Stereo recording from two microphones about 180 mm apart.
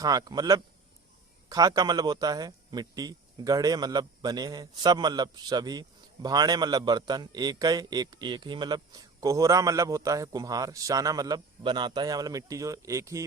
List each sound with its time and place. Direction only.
0.0 s a man's voice: 20° right (ahead or behind)